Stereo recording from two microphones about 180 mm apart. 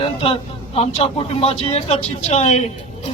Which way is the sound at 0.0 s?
30° left (ahead or behind).